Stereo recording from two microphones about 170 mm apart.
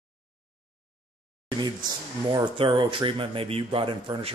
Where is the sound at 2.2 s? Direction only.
30° right (ahead or behind).